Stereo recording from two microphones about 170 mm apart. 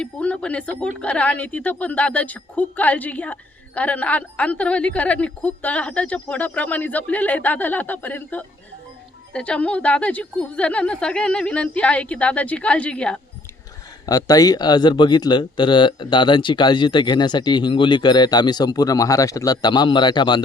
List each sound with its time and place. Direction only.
0.0 s a woman's voice: 5° left (ahead or behind)
14.1 s speech: 20° left (ahead or behind)